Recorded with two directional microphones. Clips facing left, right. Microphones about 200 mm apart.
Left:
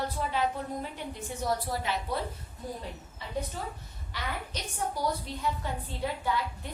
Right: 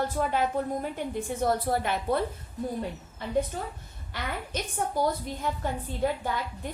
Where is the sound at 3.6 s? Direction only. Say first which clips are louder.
Right 2 dB; 50° right (ahead or behind).